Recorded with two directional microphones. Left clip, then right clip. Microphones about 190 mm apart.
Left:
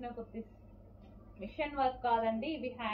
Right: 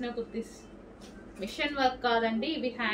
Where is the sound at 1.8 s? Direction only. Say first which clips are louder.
Right 4 dB; 25° right (ahead or behind).